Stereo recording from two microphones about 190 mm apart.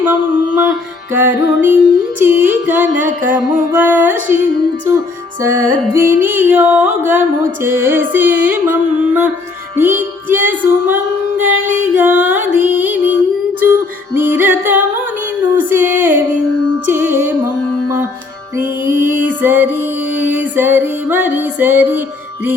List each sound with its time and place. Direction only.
0.0 s music: 10° right (ahead or behind)
3.2 s music: 45° right (ahead or behind)
3.7 s music: 10° right (ahead or behind)
5.4 s music: 15° right (ahead or behind)
18.5 s music: 10° right (ahead or behind)